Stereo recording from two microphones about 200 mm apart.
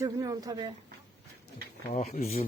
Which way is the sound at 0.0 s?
20° right (ahead or behind).